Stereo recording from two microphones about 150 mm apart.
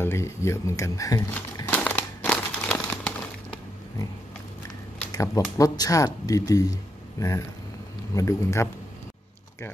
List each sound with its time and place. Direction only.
0.0 s speech: 15° left (ahead or behind)
1.7 s crumpling: 10° left (ahead or behind)
5.1 s speech: 20° left (ahead or behind)